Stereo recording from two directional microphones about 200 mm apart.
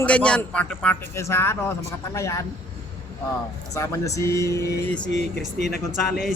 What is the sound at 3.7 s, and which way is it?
Speech, 15° left (ahead or behind).